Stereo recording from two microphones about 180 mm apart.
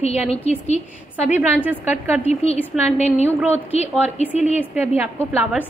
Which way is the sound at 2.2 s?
35° left (ahead or behind).